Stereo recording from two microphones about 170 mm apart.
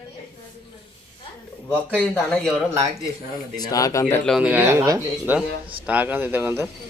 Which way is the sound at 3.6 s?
20° left (ahead or behind).